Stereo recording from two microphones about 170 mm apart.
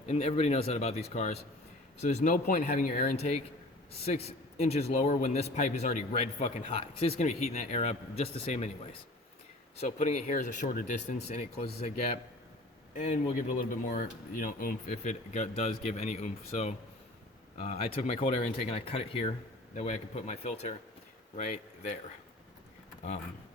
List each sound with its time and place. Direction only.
0.1 s speech: 40° left (ahead or behind)